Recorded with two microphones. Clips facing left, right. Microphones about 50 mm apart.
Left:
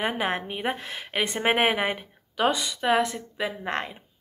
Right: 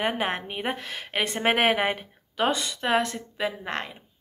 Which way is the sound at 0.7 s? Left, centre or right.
Centre.